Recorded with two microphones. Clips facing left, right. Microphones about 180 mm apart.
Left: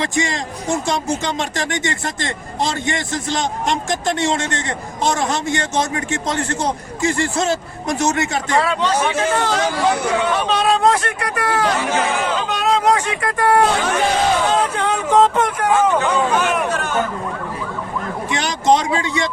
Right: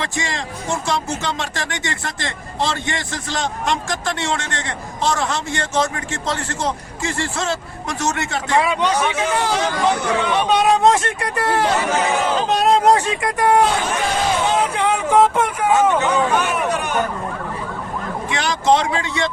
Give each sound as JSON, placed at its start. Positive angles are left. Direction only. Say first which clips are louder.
{"t": 0.0, "sound": "speech", "louder": "left 4 dB", "side_deg": 20}
{"t": 8.5, "sound": "speech", "louder": "right 1 dB", "side_deg": -10}
{"t": 10.5, "sound": "speech", "louder": "right 2 dB", "side_deg": -15}
{"t": 13.2, "sound": "speech", "louder": "left 1 dB", "side_deg": -15}
{"t": 14.6, "sound": "speech", "louder": "right 1 dB", "side_deg": -10}
{"t": 16.7, "sound": "speech", "louder": "even", "side_deg": -15}
{"t": 18.4, "sound": "speech", "louder": "even", "side_deg": 15}